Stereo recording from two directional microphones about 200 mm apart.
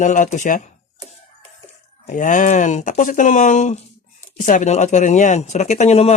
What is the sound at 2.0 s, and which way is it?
Speech, 40° left (ahead or behind).